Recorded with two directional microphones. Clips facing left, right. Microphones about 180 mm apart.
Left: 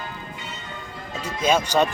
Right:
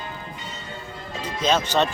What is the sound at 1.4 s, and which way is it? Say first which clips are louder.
Speech: left 1 dB; 10° left (ahead or behind).